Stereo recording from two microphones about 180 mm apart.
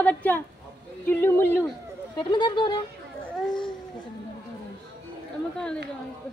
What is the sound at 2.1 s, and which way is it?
Speech, 25° left (ahead or behind).